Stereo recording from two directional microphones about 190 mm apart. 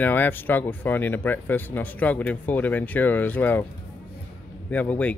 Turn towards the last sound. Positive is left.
turn(degrees=5)  # may be behind; listen again after turning